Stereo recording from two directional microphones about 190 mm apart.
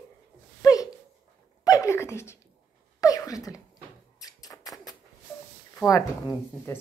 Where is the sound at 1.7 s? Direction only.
15° left (ahead or behind).